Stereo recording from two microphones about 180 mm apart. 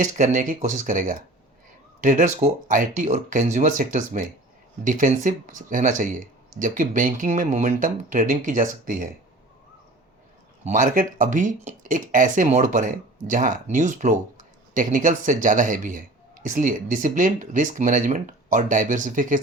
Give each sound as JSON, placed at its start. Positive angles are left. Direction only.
{"t": 0.0, "sound": "a man's voice", "side_deg": -45}
{"t": 10.6, "sound": "a man's voice", "side_deg": -45}